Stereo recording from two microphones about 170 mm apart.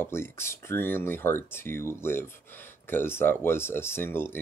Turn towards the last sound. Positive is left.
turn(degrees=15)  # may be behind; listen again after turning